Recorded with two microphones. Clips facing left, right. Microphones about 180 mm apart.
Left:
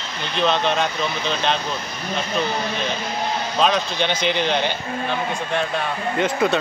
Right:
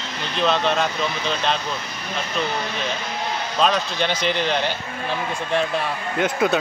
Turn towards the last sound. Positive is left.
turn(degrees=0)  # may be behind; listen again after turning